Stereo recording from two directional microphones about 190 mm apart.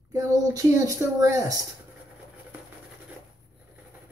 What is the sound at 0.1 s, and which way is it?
Speech, 15° right (ahead or behind).